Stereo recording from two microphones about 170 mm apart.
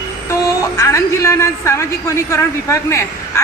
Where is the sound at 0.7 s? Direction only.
20° left (ahead or behind).